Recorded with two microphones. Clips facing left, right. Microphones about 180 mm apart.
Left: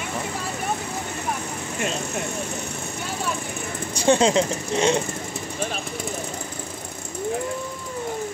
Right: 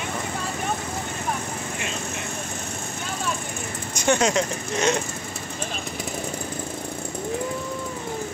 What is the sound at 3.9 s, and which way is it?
Speech, 30° left (ahead or behind).